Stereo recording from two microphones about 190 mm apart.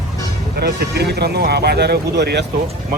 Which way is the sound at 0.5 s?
60° right (ahead or behind).